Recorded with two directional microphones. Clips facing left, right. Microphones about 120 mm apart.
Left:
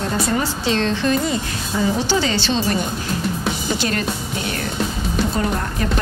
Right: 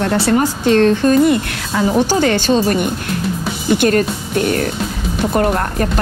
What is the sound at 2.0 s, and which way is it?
Speech, 50° right (ahead or behind).